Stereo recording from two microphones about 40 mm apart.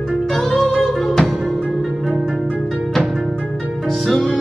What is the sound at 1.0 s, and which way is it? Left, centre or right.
Music, centre.